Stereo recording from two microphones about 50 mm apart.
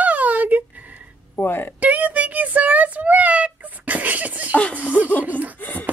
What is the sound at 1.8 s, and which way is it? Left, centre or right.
Child singing, right.